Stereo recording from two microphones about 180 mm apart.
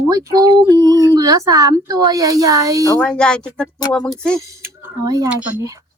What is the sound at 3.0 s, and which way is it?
Speech, 5° left (ahead or behind).